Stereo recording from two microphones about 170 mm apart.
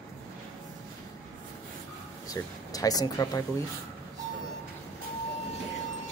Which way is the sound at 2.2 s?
20° left (ahead or behind).